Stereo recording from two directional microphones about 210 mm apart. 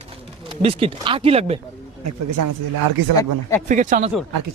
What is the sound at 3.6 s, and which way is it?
Speech, 35° right (ahead or behind).